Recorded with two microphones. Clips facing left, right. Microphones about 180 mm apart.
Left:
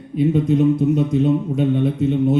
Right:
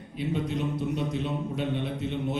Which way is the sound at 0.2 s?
50° left (ahead or behind).